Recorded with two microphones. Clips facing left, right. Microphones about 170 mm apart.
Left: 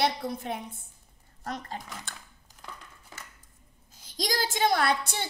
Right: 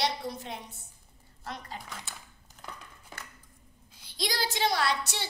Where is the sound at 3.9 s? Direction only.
45° left (ahead or behind).